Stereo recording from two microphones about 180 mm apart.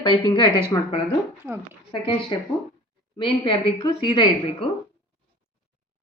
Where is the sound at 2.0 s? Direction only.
25° left (ahead or behind).